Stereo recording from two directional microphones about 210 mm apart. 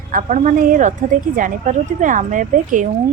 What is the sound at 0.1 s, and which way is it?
A woman's voice, 40° right (ahead or behind).